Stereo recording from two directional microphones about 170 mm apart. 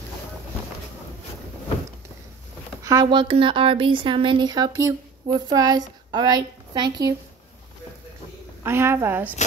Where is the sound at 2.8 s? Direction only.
20° right (ahead or behind).